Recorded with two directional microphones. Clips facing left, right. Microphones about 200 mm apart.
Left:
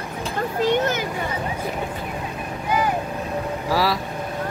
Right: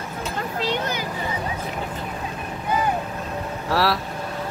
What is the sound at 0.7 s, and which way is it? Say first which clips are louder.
Vehicle: left 6 dB; 50° left (ahead or behind).